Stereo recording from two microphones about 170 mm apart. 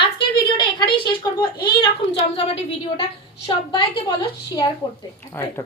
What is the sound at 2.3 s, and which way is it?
A woman's voice, 35° left (ahead or behind).